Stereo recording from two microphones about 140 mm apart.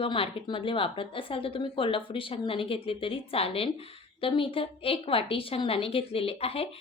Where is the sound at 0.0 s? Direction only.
40° left (ahead or behind).